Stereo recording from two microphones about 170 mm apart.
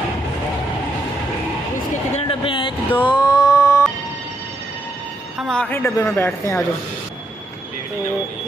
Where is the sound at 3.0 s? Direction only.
25° left (ahead or behind).